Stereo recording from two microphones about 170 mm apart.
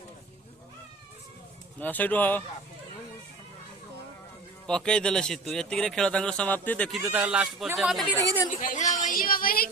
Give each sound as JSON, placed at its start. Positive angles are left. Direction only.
{"t": 1.8, "sound": "speech", "side_deg": 10}
{"t": 4.6, "sound": "speech", "side_deg": 5}
{"t": 7.1, "sound": "speech", "side_deg": -10}
{"t": 8.4, "sound": "a woman's voice", "side_deg": 45}